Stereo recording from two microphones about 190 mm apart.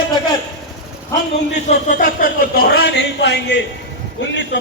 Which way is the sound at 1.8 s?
45° left (ahead or behind).